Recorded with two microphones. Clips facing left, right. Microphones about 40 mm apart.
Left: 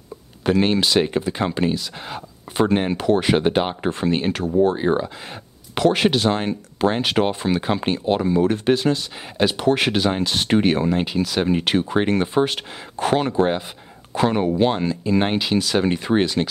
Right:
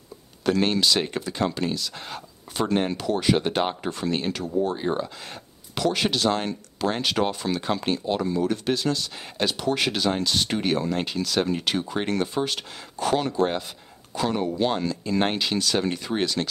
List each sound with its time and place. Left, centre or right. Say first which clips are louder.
0.4 s speech: left 4 dB; centre
9.6 s speech: left 6 dB; left
10.9 s speech: left 5 dB; centre
11.4 s speech: left 6 dB; left; by 15.8 s centre
15.8 s speech: left 6 dB; left